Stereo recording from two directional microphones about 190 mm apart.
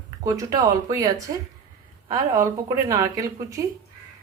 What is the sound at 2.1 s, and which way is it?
A woman's voice, 20° right (ahead or behind).